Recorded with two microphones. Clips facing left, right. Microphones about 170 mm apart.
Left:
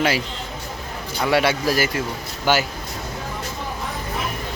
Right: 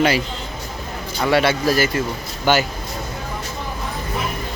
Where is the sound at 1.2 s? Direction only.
10° left (ahead or behind).